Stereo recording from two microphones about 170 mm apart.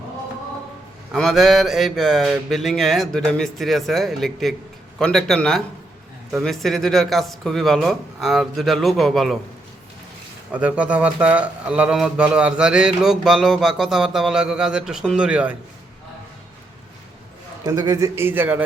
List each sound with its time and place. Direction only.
1.1 s a man's voice: centre (ahead or behind)
10.5 s a man's voice: 5° right (ahead or behind)
17.6 s a man's voice: 20° right (ahead or behind)